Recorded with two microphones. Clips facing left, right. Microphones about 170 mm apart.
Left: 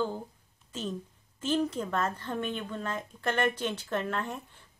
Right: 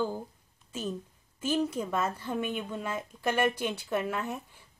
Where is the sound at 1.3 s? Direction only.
10° right (ahead or behind).